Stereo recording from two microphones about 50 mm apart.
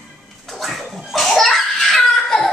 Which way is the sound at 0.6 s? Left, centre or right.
Centre.